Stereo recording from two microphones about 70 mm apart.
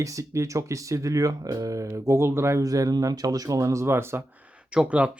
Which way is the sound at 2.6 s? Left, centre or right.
Right.